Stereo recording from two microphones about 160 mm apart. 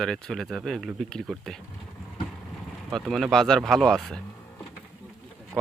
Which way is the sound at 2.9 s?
Centre (ahead or behind).